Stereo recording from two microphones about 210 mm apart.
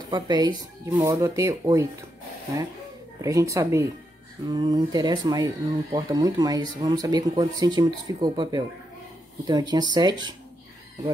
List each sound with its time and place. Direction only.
0.1 s speech: 20° right (ahead or behind)
3.2 s speech: 15° right (ahead or behind)